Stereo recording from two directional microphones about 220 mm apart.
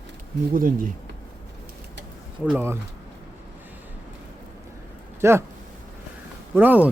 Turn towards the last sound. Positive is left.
turn(degrees=-5)  # may be behind; listen again after turning